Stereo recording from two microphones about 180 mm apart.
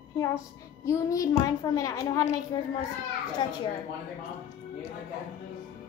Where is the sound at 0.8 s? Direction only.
20° left (ahead or behind).